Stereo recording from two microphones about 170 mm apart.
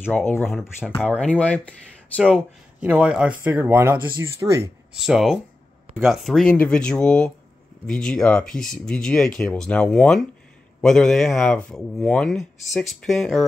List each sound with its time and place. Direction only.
0.0 s speech: 10° left (ahead or behind)
0.4 s speech: centre (ahead or behind)
0.9 s speech: 10° left (ahead or behind)
2.2 s speech: 5° right (ahead or behind)
4.9 s speech: centre (ahead or behind)